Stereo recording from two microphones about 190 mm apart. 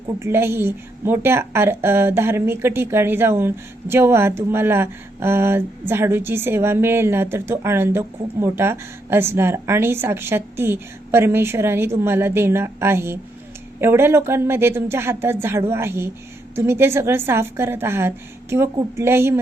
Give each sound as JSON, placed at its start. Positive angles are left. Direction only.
{"t": 0.2, "sound": "a woman's voice", "side_deg": -10}